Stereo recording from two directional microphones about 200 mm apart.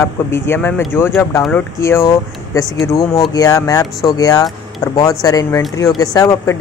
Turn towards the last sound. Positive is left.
turn(degrees=15)  # may be behind; listen again after turning